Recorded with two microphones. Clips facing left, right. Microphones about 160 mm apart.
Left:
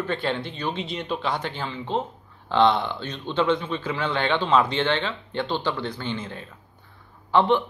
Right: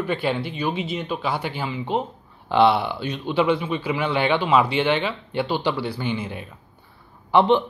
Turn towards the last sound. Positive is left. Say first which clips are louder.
# right 3 dB
turn(degrees=-20)  # may be behind; listen again after turning